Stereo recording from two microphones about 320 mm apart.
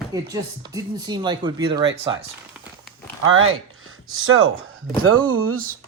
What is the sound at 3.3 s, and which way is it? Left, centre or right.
Speech, right.